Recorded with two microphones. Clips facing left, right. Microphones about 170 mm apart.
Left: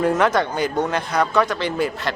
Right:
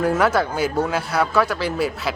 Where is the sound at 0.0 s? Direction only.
5° right (ahead or behind).